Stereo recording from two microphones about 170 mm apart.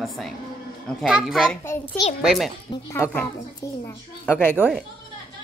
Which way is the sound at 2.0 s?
20° left (ahead or behind).